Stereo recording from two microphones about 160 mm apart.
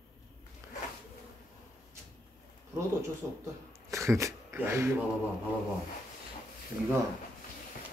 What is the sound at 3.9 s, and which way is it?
Speech, 20° right (ahead or behind).